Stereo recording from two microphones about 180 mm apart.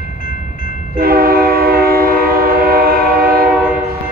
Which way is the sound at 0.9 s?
55° right (ahead or behind).